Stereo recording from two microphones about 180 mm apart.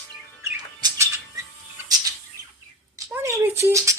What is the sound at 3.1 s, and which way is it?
Rattle, 15° right (ahead or behind).